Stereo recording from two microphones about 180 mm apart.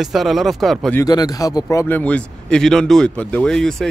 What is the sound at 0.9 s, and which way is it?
Speech, 20° left (ahead or behind).